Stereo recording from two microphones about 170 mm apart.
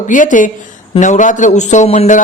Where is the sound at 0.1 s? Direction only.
50° left (ahead or behind).